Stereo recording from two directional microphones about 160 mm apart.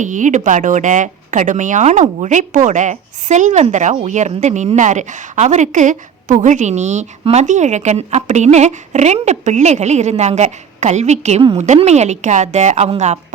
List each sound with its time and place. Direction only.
0.0 s speech: 50° right (ahead or behind)